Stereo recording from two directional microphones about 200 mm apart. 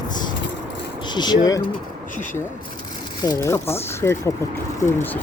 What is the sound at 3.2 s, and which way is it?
Speech, 15° left (ahead or behind).